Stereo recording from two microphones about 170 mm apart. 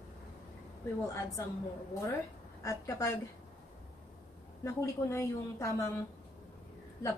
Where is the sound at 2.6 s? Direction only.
15° left (ahead or behind).